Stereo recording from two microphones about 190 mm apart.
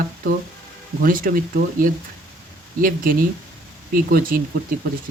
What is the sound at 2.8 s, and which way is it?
Speech, 45° right (ahead or behind).